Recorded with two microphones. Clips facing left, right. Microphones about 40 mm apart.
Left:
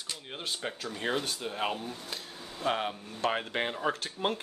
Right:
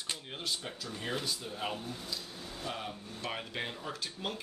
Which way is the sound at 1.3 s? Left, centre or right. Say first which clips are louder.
Left 4 dB; left.